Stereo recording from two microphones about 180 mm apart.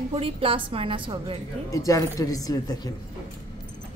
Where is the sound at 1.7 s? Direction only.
20° left (ahead or behind).